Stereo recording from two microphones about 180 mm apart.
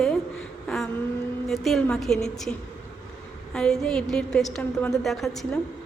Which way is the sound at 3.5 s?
5° left (ahead or behind).